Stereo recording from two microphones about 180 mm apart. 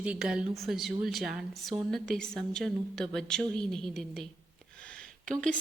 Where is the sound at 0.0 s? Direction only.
5° right (ahead or behind).